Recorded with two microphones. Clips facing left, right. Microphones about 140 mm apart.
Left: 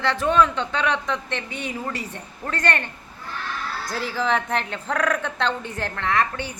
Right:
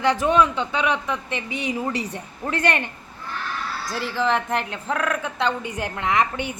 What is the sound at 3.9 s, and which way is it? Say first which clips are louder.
Speech: right 1 dB; centre (ahead or behind).